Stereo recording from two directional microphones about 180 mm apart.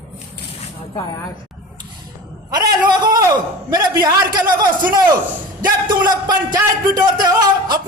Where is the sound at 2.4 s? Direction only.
25° right (ahead or behind).